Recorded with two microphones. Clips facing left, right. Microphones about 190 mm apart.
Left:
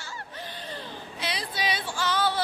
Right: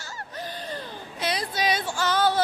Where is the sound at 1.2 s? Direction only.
45° right (ahead or behind).